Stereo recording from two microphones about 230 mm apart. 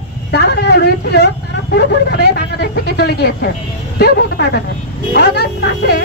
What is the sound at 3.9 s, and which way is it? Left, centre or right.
Speech, left.